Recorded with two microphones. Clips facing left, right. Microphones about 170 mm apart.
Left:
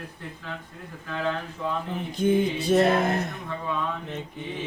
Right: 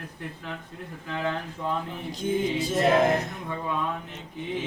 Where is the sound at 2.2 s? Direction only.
65° left (ahead or behind).